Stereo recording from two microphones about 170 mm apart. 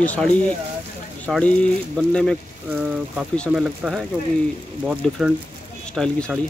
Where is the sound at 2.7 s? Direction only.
5° right (ahead or behind).